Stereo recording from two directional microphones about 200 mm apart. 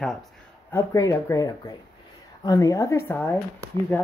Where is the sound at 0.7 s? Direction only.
15° left (ahead or behind).